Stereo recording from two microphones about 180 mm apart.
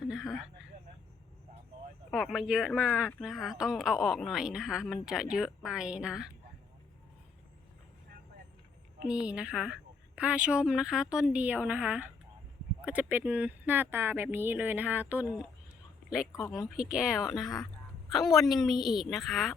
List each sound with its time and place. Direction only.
0.0 s speech: 5° right (ahead or behind)
2.0 s a woman's voice: centre (ahead or behind)
9.0 s a woman's voice: 5° right (ahead or behind)
16.5 s a woman's voice: 5° right (ahead or behind)